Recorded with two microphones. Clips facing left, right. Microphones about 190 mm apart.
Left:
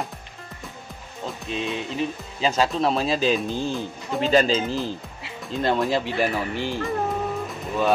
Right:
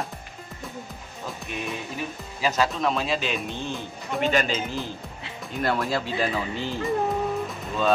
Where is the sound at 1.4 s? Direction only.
25° left (ahead or behind).